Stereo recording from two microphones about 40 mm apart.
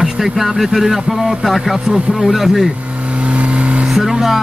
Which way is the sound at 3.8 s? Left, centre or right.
Centre.